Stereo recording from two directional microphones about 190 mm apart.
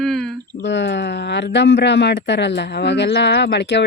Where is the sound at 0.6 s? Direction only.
65° left (ahead or behind).